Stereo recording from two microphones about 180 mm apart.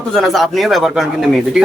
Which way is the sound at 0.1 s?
Centre (ahead or behind).